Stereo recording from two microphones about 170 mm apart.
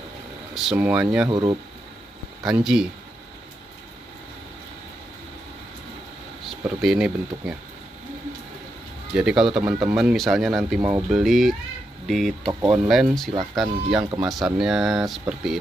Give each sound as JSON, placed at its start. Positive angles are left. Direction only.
{"t": 0.6, "sound": "speech", "side_deg": -5}
{"t": 1.3, "sound": "speech", "side_deg": -25}
{"t": 2.5, "sound": "speech", "side_deg": -5}
{"t": 6.4, "sound": "speech", "side_deg": -5}
{"t": 9.1, "sound": "speech", "side_deg": -5}